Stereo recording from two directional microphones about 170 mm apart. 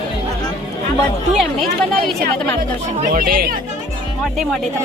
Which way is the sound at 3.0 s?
55° right (ahead or behind).